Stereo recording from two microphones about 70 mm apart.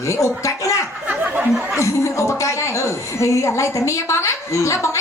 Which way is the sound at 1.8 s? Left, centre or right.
Left.